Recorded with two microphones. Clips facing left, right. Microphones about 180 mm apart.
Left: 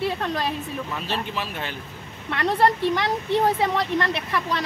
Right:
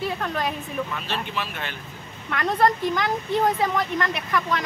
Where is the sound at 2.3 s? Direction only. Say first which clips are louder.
Left 1 dB; 30° left (ahead or behind).